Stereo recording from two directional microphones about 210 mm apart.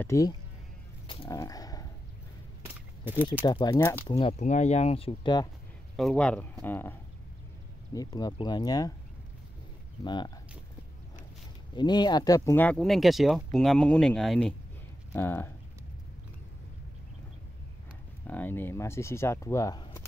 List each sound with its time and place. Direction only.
0.0 s speech: 15° left (ahead or behind)
1.0 s a sound: 25° left (ahead or behind)
2.6 s a sound: 10° right (ahead or behind)
3.4 s speech: 20° left (ahead or behind)
4.1 s speech: 30° left (ahead or behind)
5.9 s speech: 5° left (ahead or behind); by 8.9 s 20° left (ahead or behind)
10.0 s speech: 20° left (ahead or behind)
11.7 s speech: 20° left (ahead or behind)
18.2 s speech: 10° left (ahead or behind)